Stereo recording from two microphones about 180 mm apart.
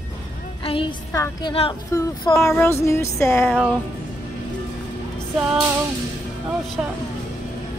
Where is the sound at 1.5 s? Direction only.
30° left (ahead or behind).